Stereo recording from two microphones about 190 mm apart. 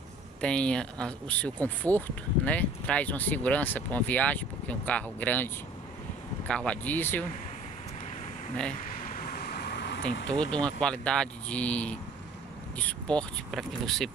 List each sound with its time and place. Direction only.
0.4 s speech: 5° left (ahead or behind)
8.8 s vehicle: 45° left (ahead or behind); by 10.0 s 65° left (ahead or behind)
10.4 s speech: 5° left (ahead or behind)